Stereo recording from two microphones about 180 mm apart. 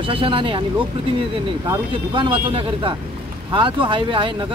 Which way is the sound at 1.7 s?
25° right (ahead or behind).